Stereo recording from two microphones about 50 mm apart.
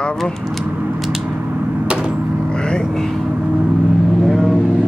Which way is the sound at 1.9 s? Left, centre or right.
Centre.